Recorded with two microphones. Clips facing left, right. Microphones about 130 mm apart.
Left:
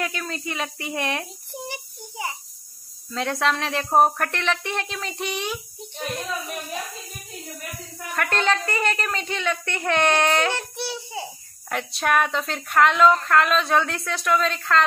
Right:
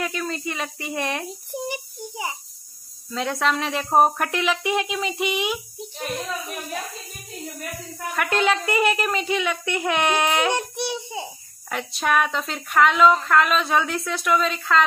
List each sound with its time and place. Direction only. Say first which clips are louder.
0.0 s speech: right 2 dB; centre (ahead or behind)
1.5 s a sound: right 6 dB; 15° right (ahead or behind)
3.1 s speech: even; centre (ahead or behind)
8.2 s speech: right 1 dB; 5° right (ahead or behind)
11.7 s speech: even; centre (ahead or behind)